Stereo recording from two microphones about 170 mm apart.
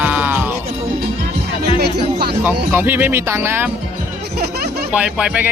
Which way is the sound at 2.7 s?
10° right (ahead or behind).